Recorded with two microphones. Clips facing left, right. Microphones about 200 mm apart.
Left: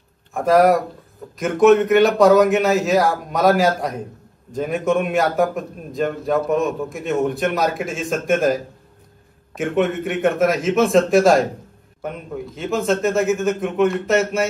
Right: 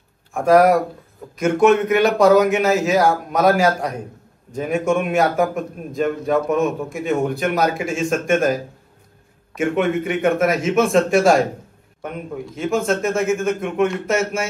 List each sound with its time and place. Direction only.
0.3 s a man's voice: centre (ahead or behind)